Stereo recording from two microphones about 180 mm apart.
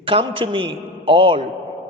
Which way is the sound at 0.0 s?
30° right (ahead or behind).